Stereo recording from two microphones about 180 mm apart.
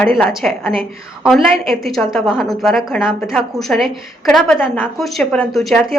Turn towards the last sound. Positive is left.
turn(degrees=0)  # may be behind; listen again after turning